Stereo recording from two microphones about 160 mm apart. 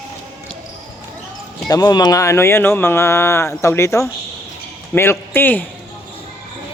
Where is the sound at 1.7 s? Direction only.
25° left (ahead or behind).